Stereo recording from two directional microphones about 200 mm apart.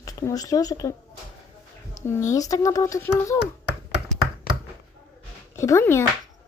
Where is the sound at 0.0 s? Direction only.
15° left (ahead or behind).